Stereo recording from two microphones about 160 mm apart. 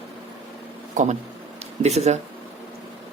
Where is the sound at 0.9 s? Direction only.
50° right (ahead or behind).